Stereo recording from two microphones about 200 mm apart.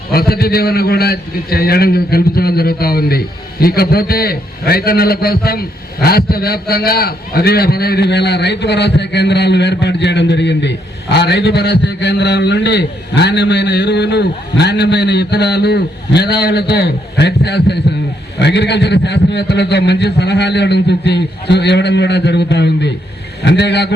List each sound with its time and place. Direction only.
0.1 s a man's voice: 50° left (ahead or behind)